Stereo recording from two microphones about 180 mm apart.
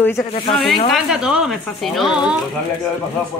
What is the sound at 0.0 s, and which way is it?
Speech, centre (ahead or behind).